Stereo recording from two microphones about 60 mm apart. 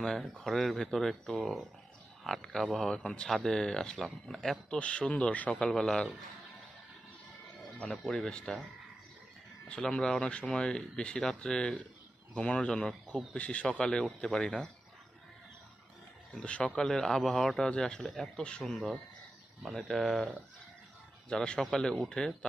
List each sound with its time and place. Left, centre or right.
0.0 s speech: centre
4.7 s speech: centre
5.7 s speech: centre
7.8 s speech: centre
9.7 s speech: centre
16.3 s speech: left
16.7 s speech: centre
17.6 s speech: centre
18.0 s speech: centre
19.9 s speech: centre
21.3 s speech: centre